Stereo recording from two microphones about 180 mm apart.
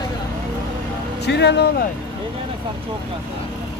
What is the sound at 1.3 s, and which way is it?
Speech, 70° left (ahead or behind).